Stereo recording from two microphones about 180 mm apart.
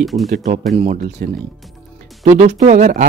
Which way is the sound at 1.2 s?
50° right (ahead or behind).